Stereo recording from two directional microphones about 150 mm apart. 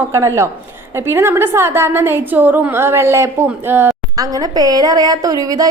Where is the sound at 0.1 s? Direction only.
20° right (ahead or behind).